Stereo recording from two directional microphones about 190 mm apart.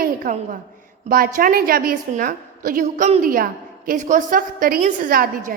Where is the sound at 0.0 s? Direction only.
45° right (ahead or behind).